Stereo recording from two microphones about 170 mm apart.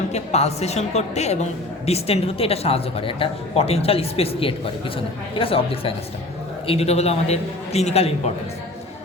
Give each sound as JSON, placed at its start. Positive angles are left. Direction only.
{"t": 0.1, "sound": "speech", "side_deg": 40}